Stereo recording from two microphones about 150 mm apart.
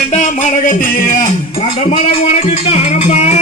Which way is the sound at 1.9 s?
45° left (ahead or behind).